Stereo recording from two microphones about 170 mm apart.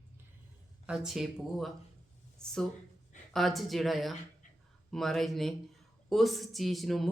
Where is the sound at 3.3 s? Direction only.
Centre (ahead or behind).